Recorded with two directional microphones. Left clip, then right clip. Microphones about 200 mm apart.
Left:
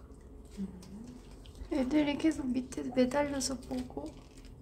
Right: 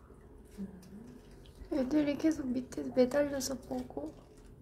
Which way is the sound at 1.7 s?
Centre (ahead or behind).